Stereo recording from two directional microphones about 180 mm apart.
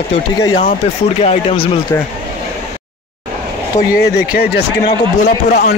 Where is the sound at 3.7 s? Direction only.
55° left (ahead or behind).